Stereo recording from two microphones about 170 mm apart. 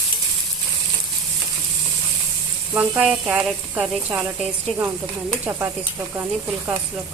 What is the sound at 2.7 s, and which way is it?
Speech, 5° right (ahead or behind).